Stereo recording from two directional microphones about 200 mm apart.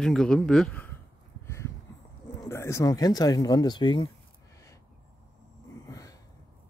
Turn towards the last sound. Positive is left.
turn(degrees=15)  # may be behind; listen again after turning